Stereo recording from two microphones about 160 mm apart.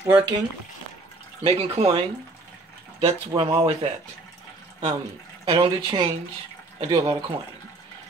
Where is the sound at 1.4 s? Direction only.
35° right (ahead or behind).